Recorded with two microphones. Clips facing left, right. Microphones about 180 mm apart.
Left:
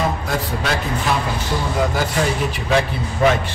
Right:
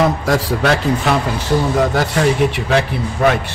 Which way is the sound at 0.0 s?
85° right.